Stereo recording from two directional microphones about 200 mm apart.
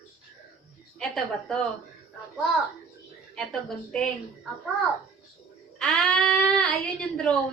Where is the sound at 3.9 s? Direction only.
5° left (ahead or behind).